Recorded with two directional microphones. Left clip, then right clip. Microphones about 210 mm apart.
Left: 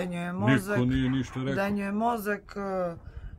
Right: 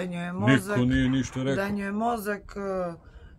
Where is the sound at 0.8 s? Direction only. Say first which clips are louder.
Right 3 dB; 50° right (ahead or behind).